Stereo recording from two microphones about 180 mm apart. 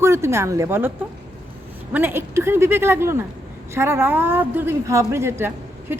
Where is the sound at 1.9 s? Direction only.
10° right (ahead or behind).